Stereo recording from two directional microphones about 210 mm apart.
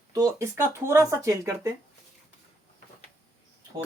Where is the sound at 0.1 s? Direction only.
15° right (ahead or behind).